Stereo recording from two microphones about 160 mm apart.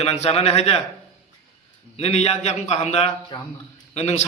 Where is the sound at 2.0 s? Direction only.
40° left (ahead or behind).